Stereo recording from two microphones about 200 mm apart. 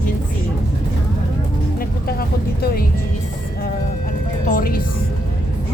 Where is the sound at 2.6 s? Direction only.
50° left (ahead or behind).